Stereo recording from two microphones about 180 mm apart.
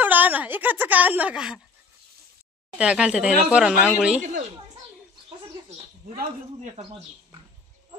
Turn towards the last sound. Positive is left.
turn(degrees=-30)  # may be behind; listen again after turning